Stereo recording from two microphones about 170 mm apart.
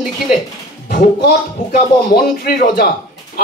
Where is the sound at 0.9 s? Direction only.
60° left (ahead or behind).